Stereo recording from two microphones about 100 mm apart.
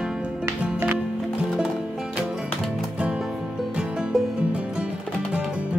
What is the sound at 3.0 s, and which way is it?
Music, 5° right (ahead or behind).